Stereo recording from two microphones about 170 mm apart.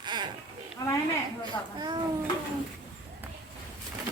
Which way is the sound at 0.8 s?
20° left (ahead or behind).